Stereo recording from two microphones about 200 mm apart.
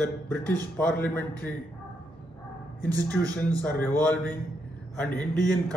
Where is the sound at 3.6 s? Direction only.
5° left (ahead or behind).